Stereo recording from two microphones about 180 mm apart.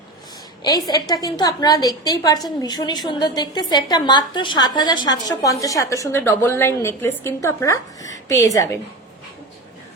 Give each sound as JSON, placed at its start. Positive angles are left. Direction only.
{"t": 0.6, "sound": "a woman's voice", "side_deg": 20}